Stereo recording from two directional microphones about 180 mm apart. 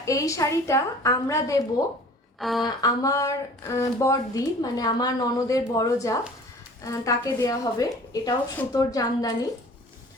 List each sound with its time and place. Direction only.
0.0 s a woman's voice: 15° left (ahead or behind)
2.4 s speech: centre (ahead or behind)
2.6 s speech: 20° left (ahead or behind)